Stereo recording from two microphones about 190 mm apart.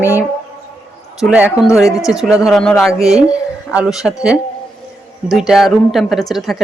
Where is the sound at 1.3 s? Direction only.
5° right (ahead or behind).